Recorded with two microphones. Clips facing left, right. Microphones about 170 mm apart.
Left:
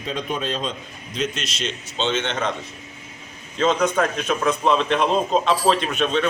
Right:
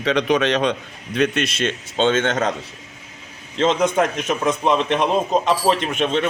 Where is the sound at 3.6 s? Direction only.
20° right (ahead or behind).